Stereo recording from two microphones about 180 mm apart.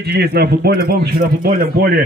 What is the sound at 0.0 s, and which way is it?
Speech, 60° right (ahead or behind).